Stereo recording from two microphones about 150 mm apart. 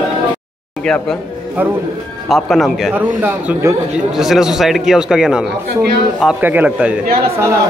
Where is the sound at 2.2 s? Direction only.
Centre (ahead or behind).